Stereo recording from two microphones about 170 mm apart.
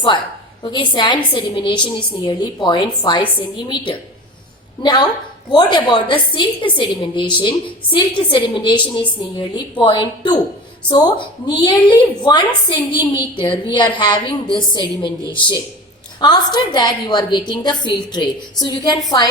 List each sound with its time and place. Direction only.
0.6 s a woman's voice: 25° left (ahead or behind)